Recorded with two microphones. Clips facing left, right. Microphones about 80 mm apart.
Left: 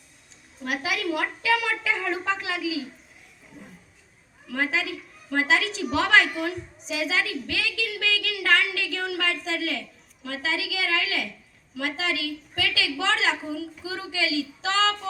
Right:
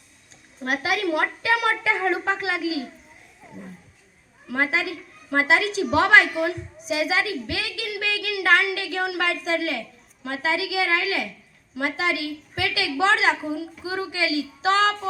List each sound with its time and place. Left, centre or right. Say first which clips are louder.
0.6 s a woman's voice: right 4 dB; right
4.5 s a woman's voice: right 3 dB; right